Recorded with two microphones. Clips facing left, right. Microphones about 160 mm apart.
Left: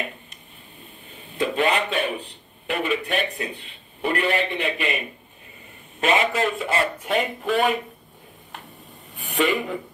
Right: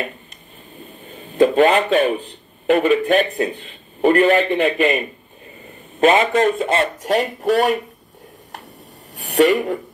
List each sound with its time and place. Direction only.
1.1 s a man's voice: 40° right (ahead or behind)
9.4 s speech: 40° right (ahead or behind)